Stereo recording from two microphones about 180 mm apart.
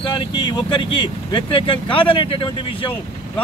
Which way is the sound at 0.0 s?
25° left (ahead or behind).